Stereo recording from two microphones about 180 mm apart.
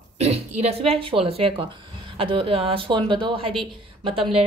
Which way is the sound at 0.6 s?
35° right (ahead or behind).